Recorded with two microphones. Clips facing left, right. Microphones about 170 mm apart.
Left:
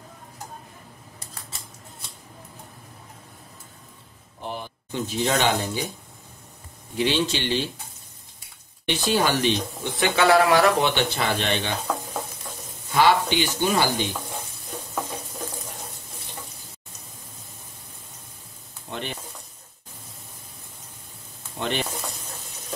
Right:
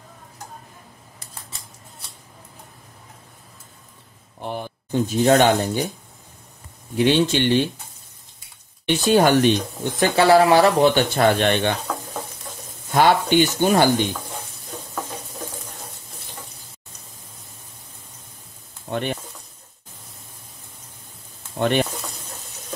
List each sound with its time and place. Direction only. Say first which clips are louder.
4.5 s speech: right 5 dB; 50° right (ahead or behind)
7.0 s speech: right 6 dB; 55° right (ahead or behind)
9.0 s speech: right 7 dB; 50° right (ahead or behind); by 10.9 s 30° right (ahead or behind)
11.0 s speech: right 7 dB; 50° right (ahead or behind)
12.9 s speech: right 3 dB; 50° right (ahead or behind)
18.9 s sizzle: right 7 dB; 55° right (ahead or behind)
21.5 s speech: right 8 dB; 55° right (ahead or behind)